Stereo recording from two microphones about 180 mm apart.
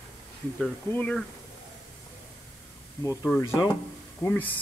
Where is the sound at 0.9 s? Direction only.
5° left (ahead or behind).